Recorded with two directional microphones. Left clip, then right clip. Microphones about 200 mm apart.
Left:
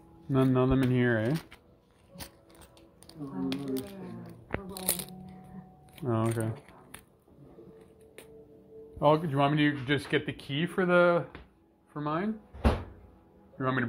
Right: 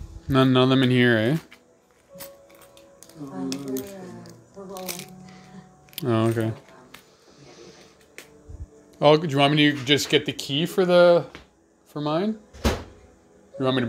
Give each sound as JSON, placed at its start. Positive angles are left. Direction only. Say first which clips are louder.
{"t": 0.3, "sound": "speech", "louder": "right 8 dB", "side_deg": -55}
{"t": 3.4, "sound": "a sound", "louder": "right 4 dB", "side_deg": 20}
{"t": 5.9, "sound": "speech", "louder": "right 8 dB", "side_deg": -55}
{"t": 9.0, "sound": "speech", "louder": "right 7 dB", "side_deg": -60}
{"t": 13.6, "sound": "a man's voice", "louder": "right 7 dB", "side_deg": -50}